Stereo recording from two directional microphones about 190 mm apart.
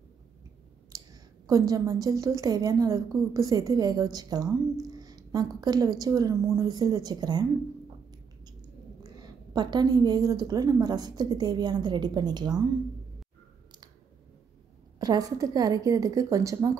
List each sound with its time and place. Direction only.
0.9 s clicking: 20° right (ahead or behind)
1.5 s a woman's voice: 20° right (ahead or behind)
9.0 s a woman's voice: 20° right (ahead or behind)
15.0 s a woman's voice: 20° right (ahead or behind)